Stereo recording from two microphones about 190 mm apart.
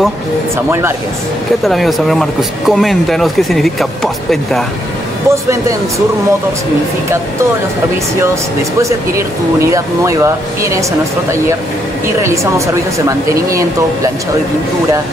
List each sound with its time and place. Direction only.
1.6 s speech: centre (ahead or behind)
5.3 s speech: 15° right (ahead or behind)
8.8 s speech: 15° right (ahead or behind)